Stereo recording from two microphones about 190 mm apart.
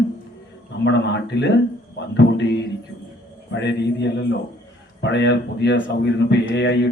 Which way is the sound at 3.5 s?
65° left (ahead or behind).